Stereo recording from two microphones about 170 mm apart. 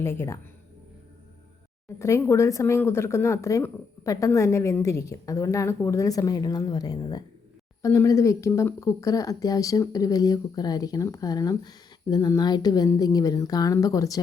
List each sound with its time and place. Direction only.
0.0 s speech: 15° left (ahead or behind)
2.0 s speech: 15° left (ahead or behind)